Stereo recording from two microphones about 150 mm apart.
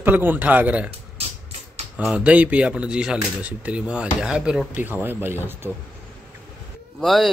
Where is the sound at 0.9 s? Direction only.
45° right (ahead or behind).